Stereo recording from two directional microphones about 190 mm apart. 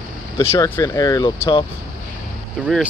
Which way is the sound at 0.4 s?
15° left (ahead or behind).